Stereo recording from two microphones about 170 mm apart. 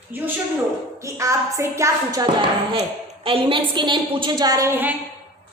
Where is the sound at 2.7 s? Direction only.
35° right (ahead or behind).